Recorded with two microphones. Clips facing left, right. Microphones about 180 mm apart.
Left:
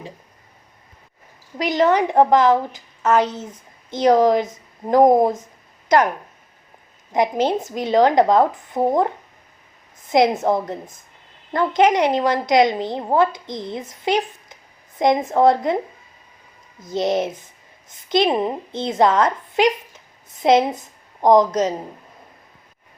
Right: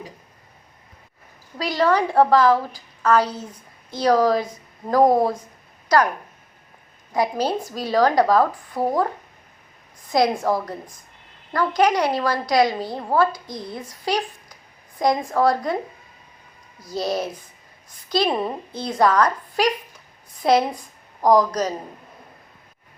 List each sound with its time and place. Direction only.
1.5 s a woman's voice: 20° left (ahead or behind)
7.1 s a woman's voice: 20° left (ahead or behind)
16.8 s a woman's voice: 20° left (ahead or behind)